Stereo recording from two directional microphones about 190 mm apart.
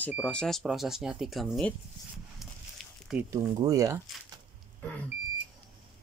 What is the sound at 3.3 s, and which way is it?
Speech, 20° right (ahead or behind).